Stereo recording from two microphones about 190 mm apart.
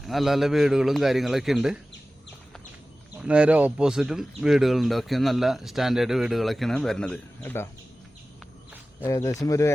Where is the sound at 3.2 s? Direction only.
5° right (ahead or behind); by 7.7 s 10° left (ahead or behind).